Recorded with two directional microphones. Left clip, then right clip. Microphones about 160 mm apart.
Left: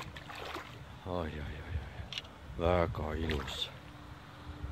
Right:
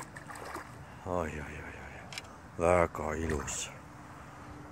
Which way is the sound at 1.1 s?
Centre (ahead or behind).